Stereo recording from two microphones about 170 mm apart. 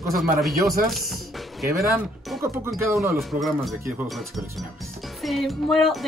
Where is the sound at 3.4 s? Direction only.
Centre (ahead or behind).